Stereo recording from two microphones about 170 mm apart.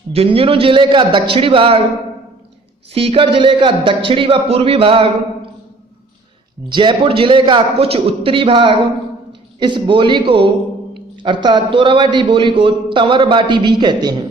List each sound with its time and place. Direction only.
0.1 s a man's voice: 35° right (ahead or behind)
2.9 s a man's voice: 35° right (ahead or behind)
6.7 s a man's voice: 25° right (ahead or behind)